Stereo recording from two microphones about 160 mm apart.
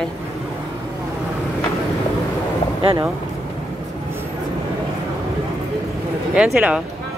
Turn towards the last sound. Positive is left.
turn(degrees=-5)  # may be behind; listen again after turning